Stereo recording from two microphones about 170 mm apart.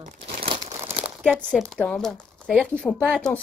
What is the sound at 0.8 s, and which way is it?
Crumpling, 10° right (ahead or behind).